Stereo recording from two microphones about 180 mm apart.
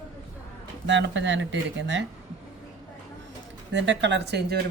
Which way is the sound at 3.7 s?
85° right.